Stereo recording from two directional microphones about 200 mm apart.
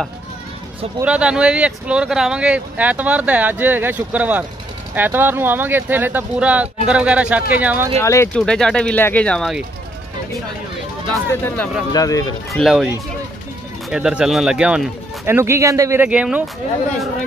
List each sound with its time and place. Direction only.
1.0 s speech: 5° right (ahead or behind)
8.0 s speech: 15° left (ahead or behind)
11.4 s speech: 10° left (ahead or behind)
12.4 s speech: centre (ahead or behind)